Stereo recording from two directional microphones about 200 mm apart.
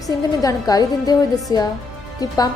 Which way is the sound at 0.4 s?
20° left (ahead or behind).